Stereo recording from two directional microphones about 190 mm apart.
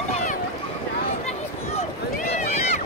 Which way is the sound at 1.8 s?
35° left (ahead or behind).